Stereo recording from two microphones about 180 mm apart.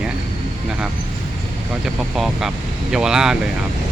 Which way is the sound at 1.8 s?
Centre (ahead or behind).